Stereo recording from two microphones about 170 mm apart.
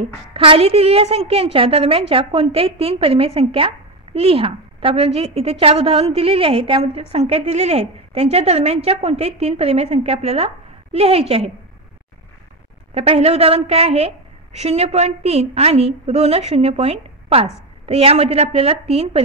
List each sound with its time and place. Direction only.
0.3 s a woman's voice: 30° right (ahead or behind)
12.9 s a woman's voice: 35° right (ahead or behind)